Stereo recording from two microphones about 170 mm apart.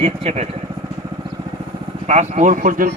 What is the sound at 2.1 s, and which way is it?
Speech, 40° right (ahead or behind).